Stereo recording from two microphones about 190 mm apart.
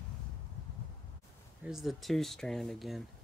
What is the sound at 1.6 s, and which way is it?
Speech, centre (ahead or behind).